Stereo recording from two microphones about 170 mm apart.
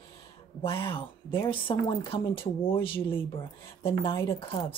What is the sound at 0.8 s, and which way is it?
Speech, 30° left (ahead or behind).